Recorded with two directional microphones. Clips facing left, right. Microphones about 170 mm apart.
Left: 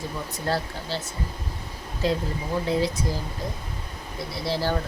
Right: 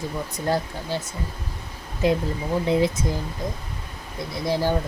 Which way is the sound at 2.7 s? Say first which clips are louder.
Right 4 dB; 20° right (ahead or behind).